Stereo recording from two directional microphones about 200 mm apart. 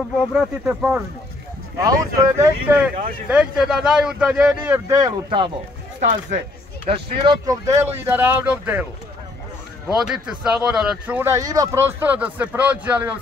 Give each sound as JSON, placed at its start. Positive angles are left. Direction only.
{"t": 0.3, "sound": "speech", "side_deg": -5}
{"t": 1.9, "sound": "speech", "side_deg": -15}
{"t": 5.9, "sound": "speech", "side_deg": -35}
{"t": 6.9, "sound": "speech", "side_deg": -25}
{"t": 9.9, "sound": "speech", "side_deg": -5}